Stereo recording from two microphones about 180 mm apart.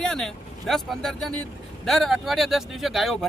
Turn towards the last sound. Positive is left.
turn(degrees=0)  # may be behind; listen again after turning